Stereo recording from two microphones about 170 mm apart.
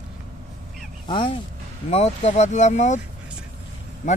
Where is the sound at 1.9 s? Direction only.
45° left (ahead or behind).